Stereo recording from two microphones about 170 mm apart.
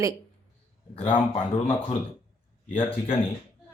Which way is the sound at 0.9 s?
30° left (ahead or behind).